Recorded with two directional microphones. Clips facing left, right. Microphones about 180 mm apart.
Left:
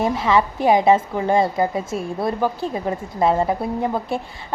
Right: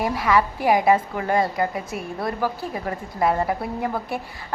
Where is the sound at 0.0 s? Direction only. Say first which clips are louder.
Left 2 dB; 25° left (ahead or behind).